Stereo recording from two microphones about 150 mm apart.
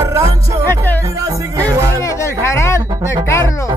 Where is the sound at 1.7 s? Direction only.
25° right (ahead or behind).